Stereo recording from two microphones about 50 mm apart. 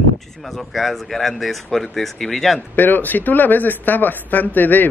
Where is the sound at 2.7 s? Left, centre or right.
Left.